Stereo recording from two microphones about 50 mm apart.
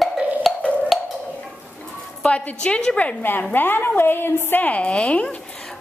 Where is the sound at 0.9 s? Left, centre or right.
Centre.